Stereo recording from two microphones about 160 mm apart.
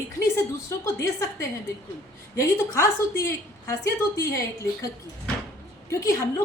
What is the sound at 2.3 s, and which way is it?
A woman's voice, 20° left (ahead or behind).